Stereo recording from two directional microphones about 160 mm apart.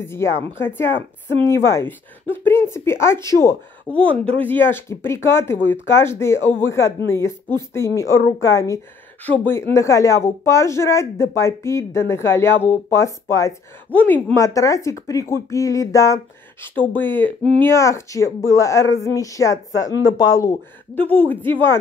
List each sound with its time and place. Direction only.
0.0 s a woman's voice: 15° left (ahead or behind)
9.2 s a woman's voice: 10° left (ahead or behind)
20.9 s a woman's voice: 10° left (ahead or behind)